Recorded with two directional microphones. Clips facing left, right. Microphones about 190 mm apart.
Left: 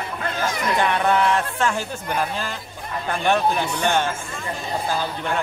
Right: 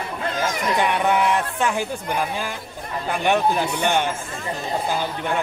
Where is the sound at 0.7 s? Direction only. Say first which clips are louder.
Even; 15° right (ahead or behind).